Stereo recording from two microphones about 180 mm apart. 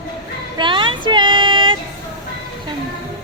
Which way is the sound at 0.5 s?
25° right (ahead or behind).